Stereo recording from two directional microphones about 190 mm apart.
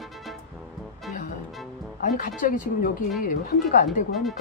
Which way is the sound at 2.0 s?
45° left (ahead or behind).